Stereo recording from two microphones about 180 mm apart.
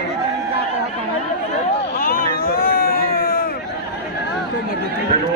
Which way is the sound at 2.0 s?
55° left (ahead or behind).